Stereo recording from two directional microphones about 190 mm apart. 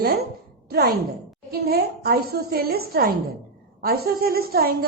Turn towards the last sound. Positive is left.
turn(degrees=-55)  # may be behind; listen again after turning